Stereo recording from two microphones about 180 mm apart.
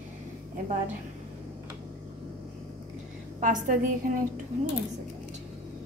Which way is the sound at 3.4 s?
45° right (ahead or behind).